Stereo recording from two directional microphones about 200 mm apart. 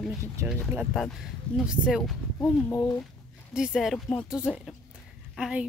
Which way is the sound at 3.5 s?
5° right (ahead or behind).